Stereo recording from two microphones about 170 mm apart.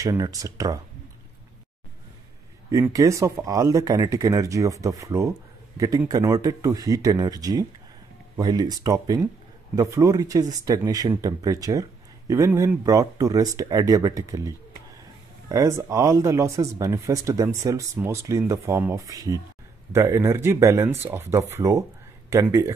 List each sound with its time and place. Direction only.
0.0 s speech: 20° right (ahead or behind)
2.7 s speech: 20° right (ahead or behind)